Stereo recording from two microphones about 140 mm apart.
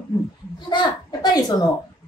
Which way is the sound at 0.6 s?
30° left (ahead or behind).